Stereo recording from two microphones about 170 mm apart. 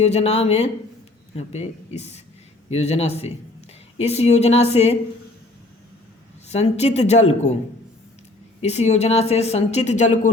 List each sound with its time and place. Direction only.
0.0 s a woman's voice: 40° left (ahead or behind)
6.5 s a woman's voice: 40° left (ahead or behind)
8.6 s a woman's voice: 40° left (ahead or behind)